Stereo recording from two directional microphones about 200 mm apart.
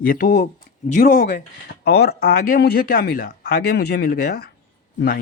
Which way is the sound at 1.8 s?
55° left (ahead or behind).